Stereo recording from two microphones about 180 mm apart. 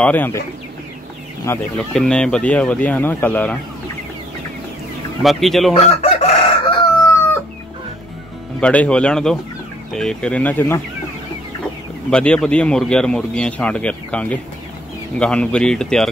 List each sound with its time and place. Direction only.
0.0 s speech: 10° left (ahead or behind)
1.5 s speech: 15° left (ahead or behind)
2.0 s speech: 5° left (ahead or behind)
5.2 s speech: centre (ahead or behind)
5.7 s chicken: 35° left (ahead or behind)
8.5 s speech: 5° left (ahead or behind)
12.1 s speech: 5° left (ahead or behind)